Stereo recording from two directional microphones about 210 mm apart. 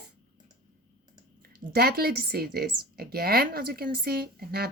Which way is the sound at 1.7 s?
45° right (ahead or behind).